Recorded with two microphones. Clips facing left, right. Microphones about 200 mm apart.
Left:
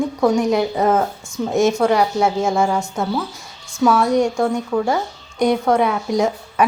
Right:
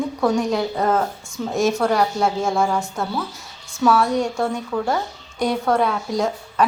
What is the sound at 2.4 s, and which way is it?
Speech, centre (ahead or behind).